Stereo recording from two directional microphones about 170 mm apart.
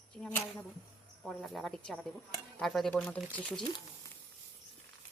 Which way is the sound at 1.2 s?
5° left (ahead or behind).